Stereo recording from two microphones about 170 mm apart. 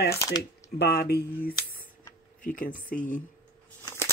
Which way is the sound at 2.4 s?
55° left (ahead or behind).